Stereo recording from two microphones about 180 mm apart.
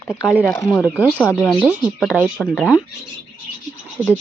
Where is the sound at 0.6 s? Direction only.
15° left (ahead or behind).